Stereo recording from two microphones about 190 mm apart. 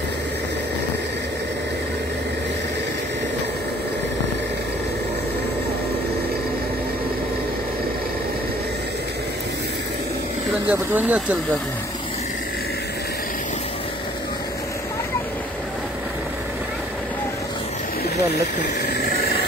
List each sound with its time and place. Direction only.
10.7 s speech: 10° right (ahead or behind)
18.1 s vehicle: 55° left (ahead or behind)